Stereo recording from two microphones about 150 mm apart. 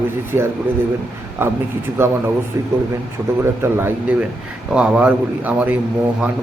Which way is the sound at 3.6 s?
15° right (ahead or behind).